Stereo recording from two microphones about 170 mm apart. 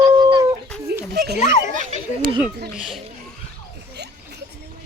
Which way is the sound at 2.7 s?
Centre (ahead or behind).